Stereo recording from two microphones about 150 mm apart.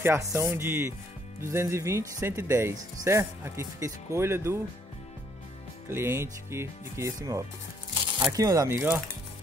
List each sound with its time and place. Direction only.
0.0 s speech: 15° right (ahead or behind)
5.9 s speech: 15° right (ahead or behind)